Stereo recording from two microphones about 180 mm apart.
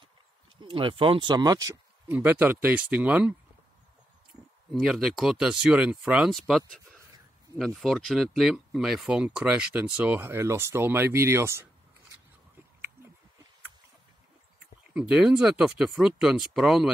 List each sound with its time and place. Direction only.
0.6 s speech: 30° right (ahead or behind)
1.7 s speech: 10° right (ahead or behind)
4.7 s speech: centre (ahead or behind)
12.5 s a sound: 10° right (ahead or behind)
15.0 s speech: 5° right (ahead or behind)